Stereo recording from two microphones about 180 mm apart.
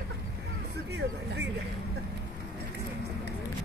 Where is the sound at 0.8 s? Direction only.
70° right (ahead or behind).